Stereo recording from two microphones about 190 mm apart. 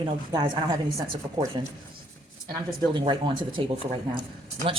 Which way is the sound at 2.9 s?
25° right (ahead or behind).